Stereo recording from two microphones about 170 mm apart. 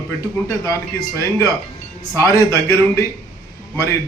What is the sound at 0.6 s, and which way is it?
A man's voice, 20° left (ahead or behind).